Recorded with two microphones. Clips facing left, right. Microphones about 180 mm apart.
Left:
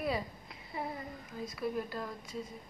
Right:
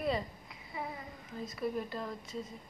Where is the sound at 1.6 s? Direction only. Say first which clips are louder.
Even; centre (ahead or behind).